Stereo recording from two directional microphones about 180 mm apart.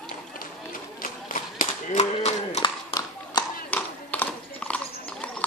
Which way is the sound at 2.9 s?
30° left (ahead or behind).